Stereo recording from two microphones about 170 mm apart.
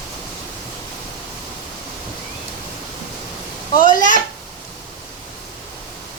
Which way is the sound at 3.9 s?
50° left (ahead or behind).